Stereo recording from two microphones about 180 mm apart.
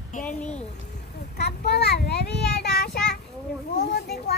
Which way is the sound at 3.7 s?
65° left (ahead or behind).